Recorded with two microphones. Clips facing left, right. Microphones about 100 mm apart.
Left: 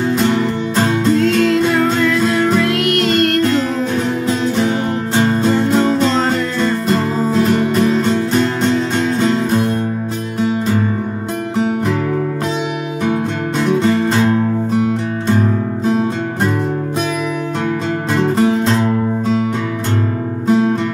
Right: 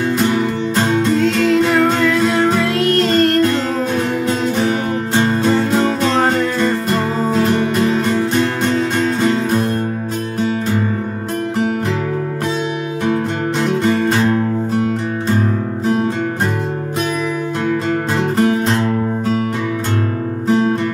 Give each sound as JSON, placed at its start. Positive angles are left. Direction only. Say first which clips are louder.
{"t": 1.4, "sound": "music", "louder": "even", "side_deg": -25}